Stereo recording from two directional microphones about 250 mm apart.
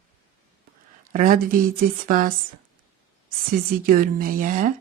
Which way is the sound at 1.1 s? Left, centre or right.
Right.